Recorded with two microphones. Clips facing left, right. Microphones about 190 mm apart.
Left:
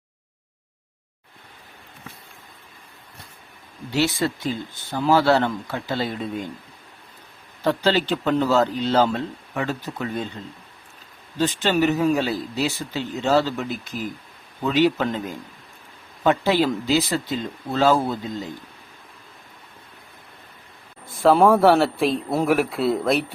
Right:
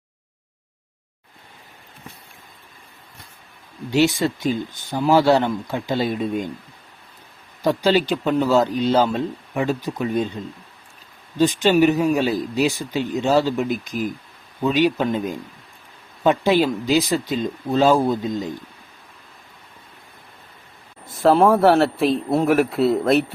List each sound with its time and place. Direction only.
3.9 s speech: 15° right (ahead or behind)
7.6 s speech: 15° right (ahead or behind)
11.3 s speech: 15° right (ahead or behind)
16.2 s speech: 15° right (ahead or behind)
21.1 s a man's voice: centre (ahead or behind)